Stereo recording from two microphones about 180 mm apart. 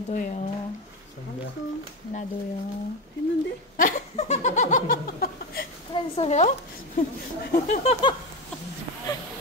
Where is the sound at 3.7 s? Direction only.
45° left (ahead or behind).